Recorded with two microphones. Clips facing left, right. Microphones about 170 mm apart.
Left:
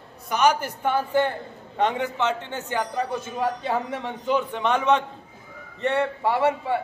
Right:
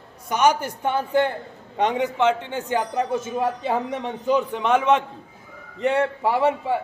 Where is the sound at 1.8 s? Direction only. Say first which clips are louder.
Right 3 dB; 15° right (ahead or behind).